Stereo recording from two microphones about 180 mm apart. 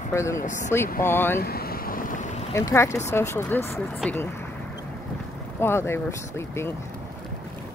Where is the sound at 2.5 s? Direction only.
15° left (ahead or behind).